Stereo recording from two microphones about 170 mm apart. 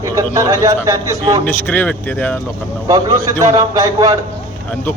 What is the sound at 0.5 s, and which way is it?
Speech, 20° right (ahead or behind).